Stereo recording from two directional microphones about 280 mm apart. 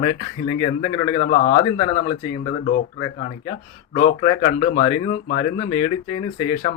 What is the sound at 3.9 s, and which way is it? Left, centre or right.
Speech, left.